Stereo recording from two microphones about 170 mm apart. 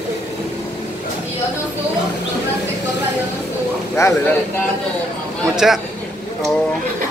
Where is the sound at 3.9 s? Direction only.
15° left (ahead or behind).